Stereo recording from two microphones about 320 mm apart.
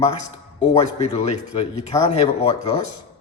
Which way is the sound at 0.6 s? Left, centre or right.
Centre.